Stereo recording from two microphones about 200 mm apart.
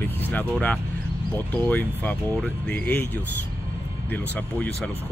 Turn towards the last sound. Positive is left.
turn(degrees=10)  # may be behind; listen again after turning